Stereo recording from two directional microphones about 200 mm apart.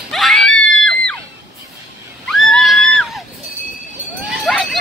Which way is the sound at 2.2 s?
Centre (ahead or behind).